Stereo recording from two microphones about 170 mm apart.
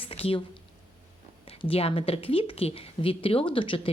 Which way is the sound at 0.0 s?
35° left (ahead or behind).